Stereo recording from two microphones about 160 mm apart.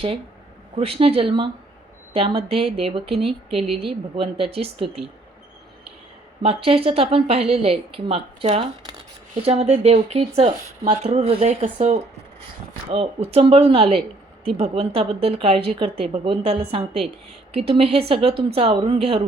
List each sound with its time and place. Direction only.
0.8 s a woman's voice: 35° right (ahead or behind)
6.4 s a woman's voice: 35° right (ahead or behind)